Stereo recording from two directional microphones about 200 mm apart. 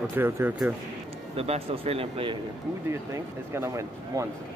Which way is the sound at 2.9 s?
15° right (ahead or behind).